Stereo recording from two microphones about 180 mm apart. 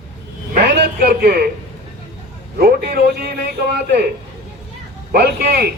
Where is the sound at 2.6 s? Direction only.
60° right (ahead or behind).